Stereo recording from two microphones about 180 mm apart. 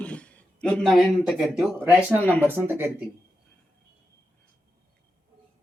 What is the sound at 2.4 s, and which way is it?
Speech, 10° right (ahead or behind).